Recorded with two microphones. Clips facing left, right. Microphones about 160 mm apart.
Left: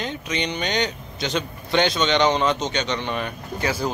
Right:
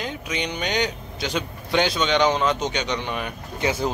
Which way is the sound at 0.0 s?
5° right (ahead or behind).